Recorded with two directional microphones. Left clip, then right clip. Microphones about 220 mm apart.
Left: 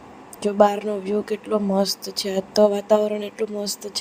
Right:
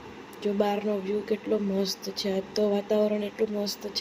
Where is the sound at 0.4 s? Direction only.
40° left (ahead or behind).